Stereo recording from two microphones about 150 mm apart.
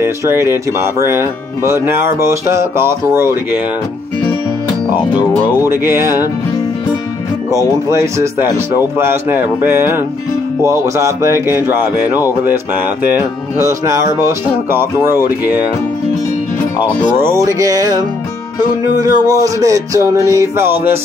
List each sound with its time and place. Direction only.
0.0 s speech: 15° right (ahead or behind)
5.7 s speech: 15° right (ahead or behind)
7.5 s speech: 20° right (ahead or behind)
17.2 s speech: 20° right (ahead or behind)